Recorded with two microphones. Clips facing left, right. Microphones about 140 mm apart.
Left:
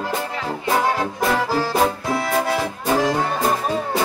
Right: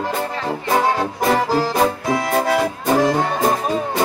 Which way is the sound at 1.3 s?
15° right (ahead or behind).